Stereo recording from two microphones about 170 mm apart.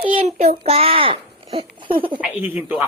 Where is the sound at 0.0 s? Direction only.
35° right (ahead or behind).